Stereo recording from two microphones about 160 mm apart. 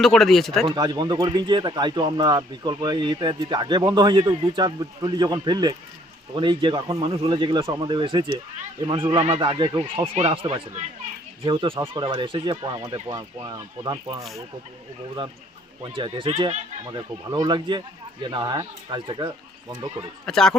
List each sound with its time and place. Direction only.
0.0 s speech: centre (ahead or behind)
0.8 s speech: 25° right (ahead or behind)
15.8 s speech: 30° right (ahead or behind)
16.9 s speech: 25° right (ahead or behind)
20.2 s speech: 5° left (ahead or behind)